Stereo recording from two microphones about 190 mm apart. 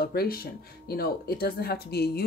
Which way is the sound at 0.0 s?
55° left (ahead or behind).